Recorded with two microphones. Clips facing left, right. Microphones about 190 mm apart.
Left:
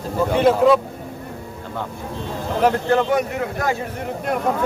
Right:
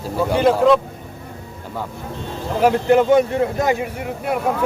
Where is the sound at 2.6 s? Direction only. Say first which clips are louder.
Right 3 dB; 10° right (ahead or behind).